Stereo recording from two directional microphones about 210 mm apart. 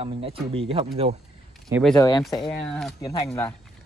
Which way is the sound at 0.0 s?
25° right (ahead or behind).